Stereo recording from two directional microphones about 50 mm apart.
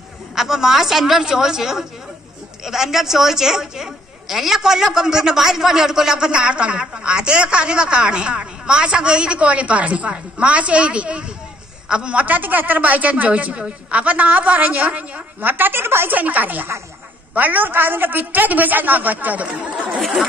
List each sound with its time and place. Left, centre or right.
0.4 s a woman's voice: centre; by 15.5 s right
15.5 s a woman's voice: right
16.1 s a woman's voice: right